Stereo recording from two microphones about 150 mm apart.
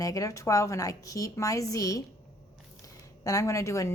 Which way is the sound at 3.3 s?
20° left (ahead or behind).